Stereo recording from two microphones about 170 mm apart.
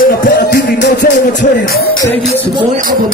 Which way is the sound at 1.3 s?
65° left (ahead or behind).